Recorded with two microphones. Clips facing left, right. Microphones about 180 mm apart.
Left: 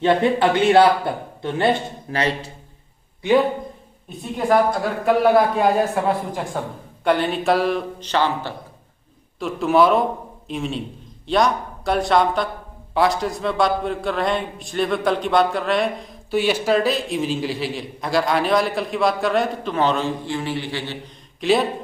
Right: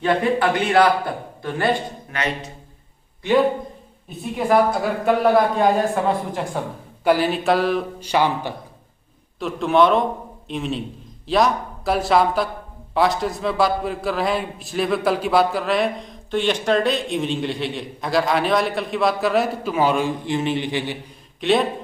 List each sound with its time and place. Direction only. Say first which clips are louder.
0.0 s a man's voice: left 2 dB; 25° left (ahead or behind)
4.2 s a man's voice: even; centre (ahead or behind)
8.0 s speech: right 2 dB; 10° right (ahead or behind)
9.4 s a man's voice: even; centre (ahead or behind); by 21.0 s 15° right (ahead or behind)
21.4 s a man's voice: even; centre (ahead or behind)